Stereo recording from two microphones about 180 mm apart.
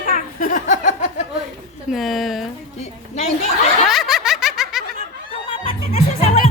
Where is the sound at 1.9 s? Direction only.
Centre (ahead or behind).